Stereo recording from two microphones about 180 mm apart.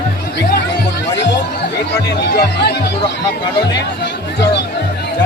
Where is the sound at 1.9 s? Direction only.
65° left (ahead or behind).